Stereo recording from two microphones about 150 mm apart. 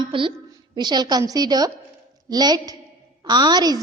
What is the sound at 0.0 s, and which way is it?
A woman's voice, 35° right (ahead or behind).